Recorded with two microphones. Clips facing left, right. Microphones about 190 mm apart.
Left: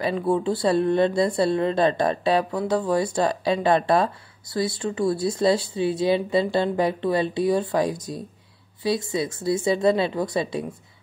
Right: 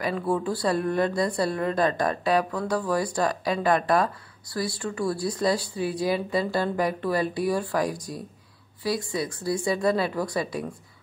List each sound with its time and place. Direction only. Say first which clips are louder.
0.0 s speech: left 3 dB; 25° left (ahead or behind)